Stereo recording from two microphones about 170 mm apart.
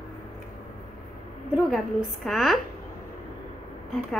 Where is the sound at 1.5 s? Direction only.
Centre (ahead or behind).